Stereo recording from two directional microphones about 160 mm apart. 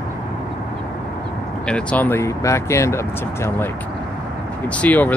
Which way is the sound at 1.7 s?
5° left (ahead or behind).